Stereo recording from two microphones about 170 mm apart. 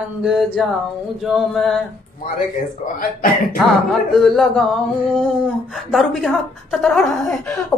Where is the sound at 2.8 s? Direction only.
40° left (ahead or behind).